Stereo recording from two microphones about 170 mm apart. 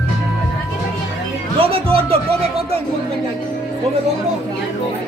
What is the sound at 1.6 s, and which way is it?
Music, 35° right (ahead or behind).